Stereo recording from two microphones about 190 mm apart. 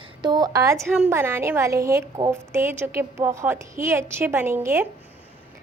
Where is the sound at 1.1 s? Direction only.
15° right (ahead or behind).